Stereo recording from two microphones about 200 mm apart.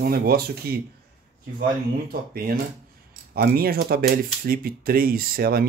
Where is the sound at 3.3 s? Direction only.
50° right (ahead or behind).